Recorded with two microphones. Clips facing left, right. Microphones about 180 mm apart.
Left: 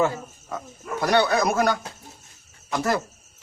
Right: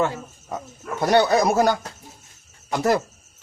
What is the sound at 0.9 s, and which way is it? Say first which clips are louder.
Speech: right 3 dB; 25° right (ahead or behind).